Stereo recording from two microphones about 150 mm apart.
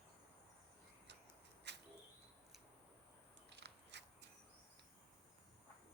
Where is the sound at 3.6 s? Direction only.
90° right.